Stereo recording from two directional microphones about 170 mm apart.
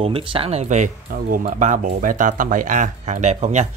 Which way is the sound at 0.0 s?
30° right (ahead or behind).